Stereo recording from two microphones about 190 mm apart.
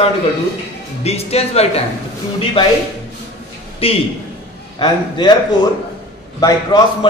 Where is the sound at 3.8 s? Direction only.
30° left (ahead or behind).